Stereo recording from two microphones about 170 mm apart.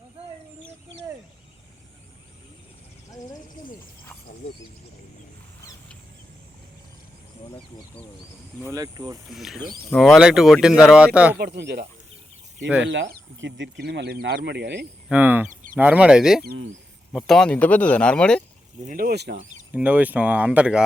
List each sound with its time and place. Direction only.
8.7 s speech: 20° right (ahead or behind)
9.3 s speech: centre (ahead or behind)
11.3 s speech: 70° right (ahead or behind)
12.8 s speech: 90° right
15.1 s a sound: 10° right (ahead or behind)
15.7 s speech: 10° right (ahead or behind)
16.4 s speech: 65° right (ahead or behind)
17.1 s speech: centre (ahead or behind)
18.8 s speech: 55° right (ahead or behind); by 19.4 s 80° right
19.7 s speech: 10° right (ahead or behind)